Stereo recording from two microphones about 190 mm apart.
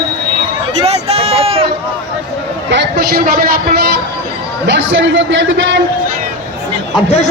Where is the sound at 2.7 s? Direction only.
65° right (ahead or behind).